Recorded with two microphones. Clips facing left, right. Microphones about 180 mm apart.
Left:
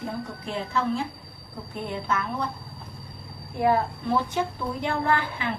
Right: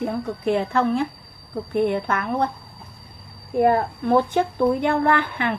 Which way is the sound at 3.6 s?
50° right (ahead or behind).